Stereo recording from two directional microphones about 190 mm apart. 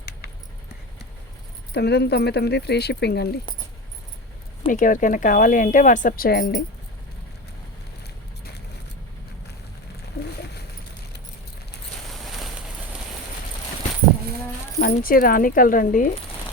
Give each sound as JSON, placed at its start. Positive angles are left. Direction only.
{"t": 1.7, "sound": "speech", "side_deg": 60}
{"t": 4.6, "sound": "a woman's voice", "side_deg": 45}
{"t": 10.2, "sound": "a sound", "side_deg": 55}
{"t": 14.8, "sound": "a woman's voice", "side_deg": 50}